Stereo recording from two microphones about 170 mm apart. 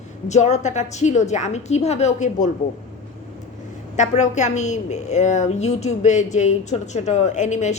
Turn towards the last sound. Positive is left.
turn(degrees=45)  # may be behind; listen again after turning